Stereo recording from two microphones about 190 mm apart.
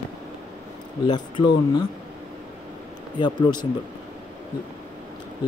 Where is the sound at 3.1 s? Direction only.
25° left (ahead or behind).